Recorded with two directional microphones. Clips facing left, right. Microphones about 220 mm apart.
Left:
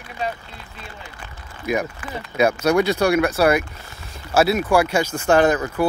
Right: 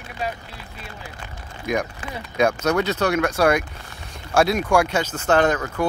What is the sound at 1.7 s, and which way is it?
Speech, 5° left (ahead or behind).